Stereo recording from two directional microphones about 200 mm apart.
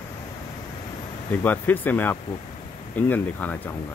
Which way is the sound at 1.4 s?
10° left (ahead or behind).